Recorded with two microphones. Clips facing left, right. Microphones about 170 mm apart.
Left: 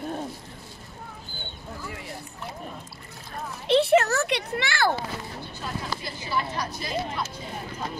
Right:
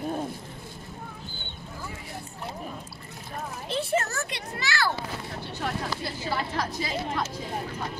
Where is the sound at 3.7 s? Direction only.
75° left (ahead or behind); by 5.0 s 50° left (ahead or behind).